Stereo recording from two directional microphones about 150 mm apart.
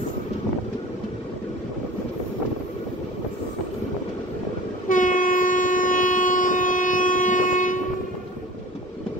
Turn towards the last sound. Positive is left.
turn(degrees=60)  # may be behind; listen again after turning